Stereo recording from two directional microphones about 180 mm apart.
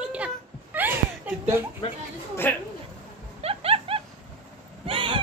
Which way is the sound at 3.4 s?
35° right (ahead or behind).